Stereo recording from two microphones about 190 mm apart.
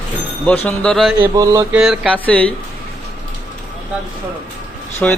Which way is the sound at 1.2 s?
15° right (ahead or behind).